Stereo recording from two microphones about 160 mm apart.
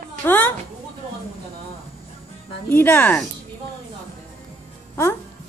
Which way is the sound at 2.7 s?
15° left (ahead or behind).